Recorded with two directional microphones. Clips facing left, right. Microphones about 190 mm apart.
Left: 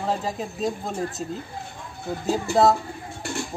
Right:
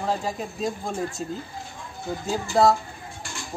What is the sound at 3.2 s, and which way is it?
Music, 60° left (ahead or behind).